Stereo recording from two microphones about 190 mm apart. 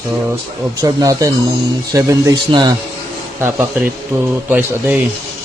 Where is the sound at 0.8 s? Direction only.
20° right (ahead or behind).